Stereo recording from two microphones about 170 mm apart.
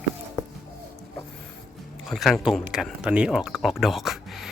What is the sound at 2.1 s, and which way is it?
Speech, centre (ahead or behind).